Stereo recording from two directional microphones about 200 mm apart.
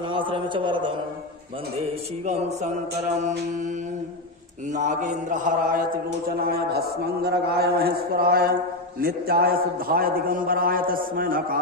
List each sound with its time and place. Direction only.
0.1 s a man's voice: 25° right (ahead or behind)
1.8 s mantra: 35° right (ahead or behind)
4.7 s mantra: 40° right (ahead or behind)
6.3 s a man's voice: 50° right (ahead or behind)